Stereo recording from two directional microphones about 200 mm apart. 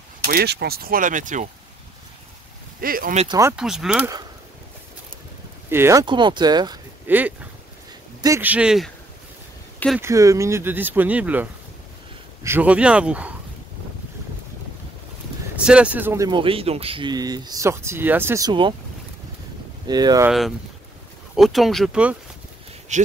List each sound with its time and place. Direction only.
0.3 s speech: 50° right (ahead or behind)
2.8 s speech: 45° right (ahead or behind)
3.5 s speech: centre (ahead or behind)
5.7 s speech: 15° right (ahead or behind)
7.1 s speech: 10° right (ahead or behind)
9.9 s speech: 15° right (ahead or behind)
12.4 s speech: 10° right (ahead or behind)
15.5 s speech: 5° right (ahead or behind); by 18.8 s 25° right (ahead or behind)
19.9 s speech: 20° right (ahead or behind)
20.2 s speech: centre (ahead or behind)
22.9 s speech: 35° right (ahead or behind)